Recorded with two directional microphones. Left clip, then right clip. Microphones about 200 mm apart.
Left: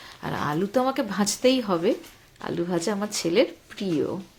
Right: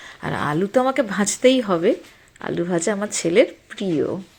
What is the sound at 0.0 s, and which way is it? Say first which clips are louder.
Speech: right 4 dB; 15° right (ahead or behind).